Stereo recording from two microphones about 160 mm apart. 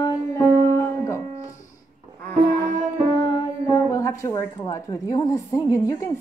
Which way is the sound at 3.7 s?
20° left (ahead or behind).